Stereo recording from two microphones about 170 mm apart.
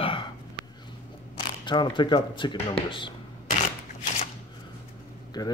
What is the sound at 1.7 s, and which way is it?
Speech, 25° left (ahead or behind).